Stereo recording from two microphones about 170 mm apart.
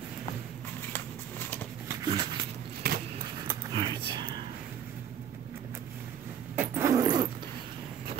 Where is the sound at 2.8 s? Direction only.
65° right (ahead or behind).